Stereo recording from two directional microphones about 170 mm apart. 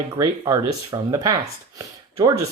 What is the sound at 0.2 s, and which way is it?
Speech, 20° right (ahead or behind).